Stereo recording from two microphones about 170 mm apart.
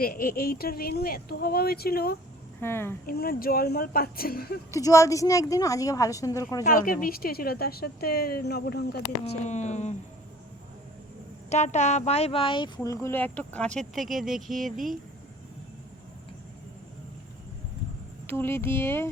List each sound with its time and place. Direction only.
0.0 s speech: 60° left (ahead or behind)
2.6 s speech: 15° left (ahead or behind)
3.1 s speech: 60° left (ahead or behind)
4.7 s speech: 20° left (ahead or behind)
6.7 s speech: 55° left (ahead or behind)
9.2 s speech: 45° left (ahead or behind)
11.4 s speech: 40° left (ahead or behind); by 14.7 s centre (ahead or behind)
18.3 s speech: 15° left (ahead or behind)